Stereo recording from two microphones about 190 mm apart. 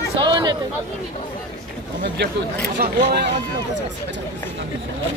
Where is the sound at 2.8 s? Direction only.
60° right (ahead or behind).